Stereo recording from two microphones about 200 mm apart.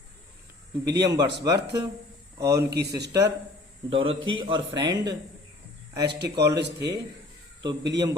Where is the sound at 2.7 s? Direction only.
55° right (ahead or behind).